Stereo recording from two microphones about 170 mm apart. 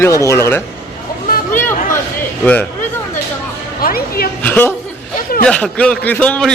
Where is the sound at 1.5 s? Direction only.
15° left (ahead or behind).